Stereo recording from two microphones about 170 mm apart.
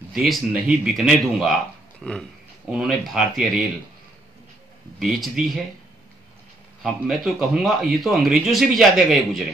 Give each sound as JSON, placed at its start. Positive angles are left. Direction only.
{"t": 0.1, "sound": "a man's voice", "side_deg": 0}
{"t": 4.9, "sound": "a man's voice", "side_deg": 0}
{"t": 6.8, "sound": "a man's voice", "side_deg": -5}